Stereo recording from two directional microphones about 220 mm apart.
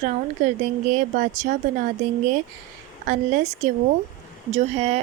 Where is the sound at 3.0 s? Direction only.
35° right (ahead or behind).